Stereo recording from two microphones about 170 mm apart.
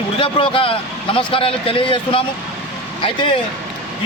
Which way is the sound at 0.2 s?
30° left (ahead or behind).